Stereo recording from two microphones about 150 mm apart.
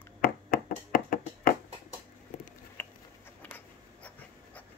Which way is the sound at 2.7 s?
10° left (ahead or behind).